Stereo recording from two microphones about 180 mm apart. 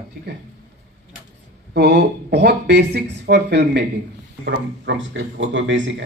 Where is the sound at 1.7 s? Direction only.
65° right (ahead or behind).